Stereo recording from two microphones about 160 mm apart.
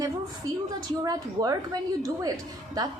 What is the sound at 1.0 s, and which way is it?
A woman's voice, 25° right (ahead or behind).